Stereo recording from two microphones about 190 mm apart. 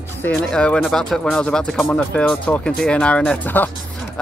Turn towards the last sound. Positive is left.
turn(degrees=10)  # may be behind; listen again after turning